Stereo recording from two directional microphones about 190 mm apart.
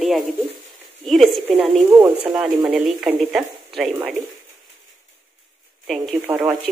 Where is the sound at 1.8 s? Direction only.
20° right (ahead or behind).